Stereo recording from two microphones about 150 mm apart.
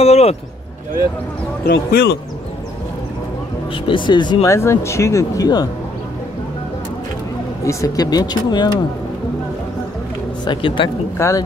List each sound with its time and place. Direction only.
0.0 s a sound: 45° left (ahead or behind)
1.6 s speech: 90° left
3.7 s speech: 35° left (ahead or behind)
4.6 s speech: 20° left (ahead or behind)
7.6 s speech: 20° left (ahead or behind)
10.4 s speech: 30° left (ahead or behind)
11.1 s speech: 20° left (ahead or behind)